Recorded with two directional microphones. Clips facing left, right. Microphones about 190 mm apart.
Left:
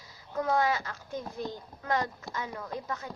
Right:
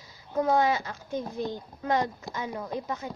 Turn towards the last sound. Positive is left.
turn(degrees=-20)  # may be behind; listen again after turning